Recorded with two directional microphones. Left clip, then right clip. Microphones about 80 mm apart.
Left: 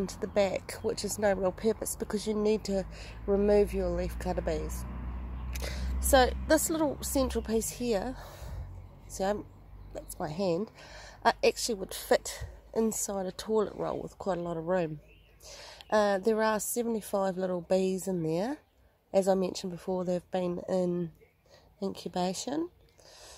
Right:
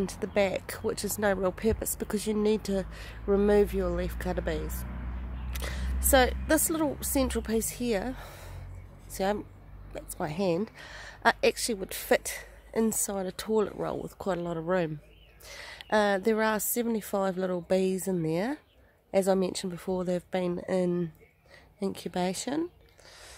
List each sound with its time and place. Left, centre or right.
0.0 s a woman's voice: centre
5.5 s a woman's voice: centre